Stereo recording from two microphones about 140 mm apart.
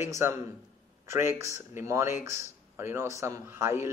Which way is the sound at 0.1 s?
20° right (ahead or behind).